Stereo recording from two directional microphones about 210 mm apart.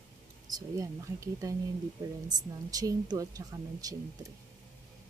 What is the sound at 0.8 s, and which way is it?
A woman's voice, 15° right (ahead or behind).